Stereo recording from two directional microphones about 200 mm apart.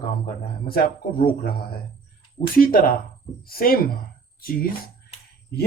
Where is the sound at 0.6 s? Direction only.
45° left (ahead or behind).